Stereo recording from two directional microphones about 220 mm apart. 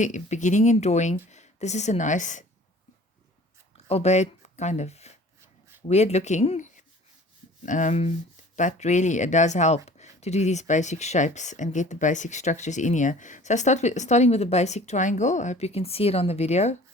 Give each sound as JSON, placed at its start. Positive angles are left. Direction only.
{"t": 0.0, "sound": "speech", "side_deg": 35}
{"t": 3.8, "sound": "speech", "side_deg": 30}